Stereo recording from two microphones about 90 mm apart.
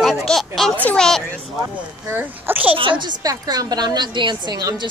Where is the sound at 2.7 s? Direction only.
65° right (ahead or behind).